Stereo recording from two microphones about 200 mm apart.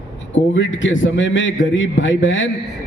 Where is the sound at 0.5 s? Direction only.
70° left (ahead or behind).